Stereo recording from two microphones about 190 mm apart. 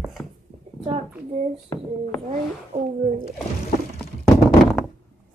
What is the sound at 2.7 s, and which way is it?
Speech, 30° right (ahead or behind).